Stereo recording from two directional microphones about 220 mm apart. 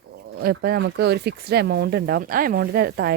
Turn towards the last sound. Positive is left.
turn(degrees=-45)  # may be behind; listen again after turning